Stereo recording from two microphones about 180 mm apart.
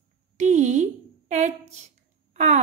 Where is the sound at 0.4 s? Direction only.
40° right (ahead or behind).